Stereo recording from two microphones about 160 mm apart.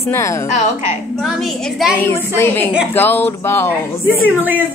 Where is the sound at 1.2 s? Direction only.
Centre (ahead or behind).